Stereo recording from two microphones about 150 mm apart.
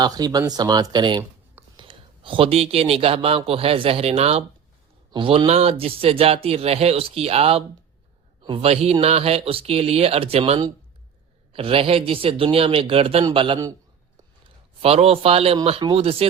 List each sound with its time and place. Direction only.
0.0 s a man's voice: 25° right (ahead or behind)
14.8 s a man's voice: 40° right (ahead or behind)